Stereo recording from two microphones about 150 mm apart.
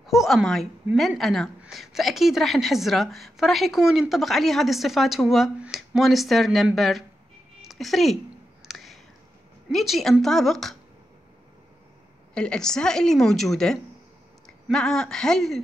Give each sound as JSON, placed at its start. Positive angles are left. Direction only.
{"t": 0.0, "sound": "a woman's voice", "side_deg": 0}
{"t": 8.6, "sound": "a sound", "side_deg": 0}
{"t": 9.7, "sound": "a woman's voice", "side_deg": 0}
{"t": 12.4, "sound": "a woman's voice", "side_deg": 5}